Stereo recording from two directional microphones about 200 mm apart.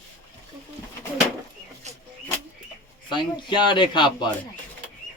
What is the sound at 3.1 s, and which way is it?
Speech, 25° left (ahead or behind).